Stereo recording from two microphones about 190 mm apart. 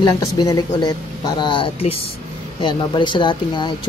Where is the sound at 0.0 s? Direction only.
20° left (ahead or behind).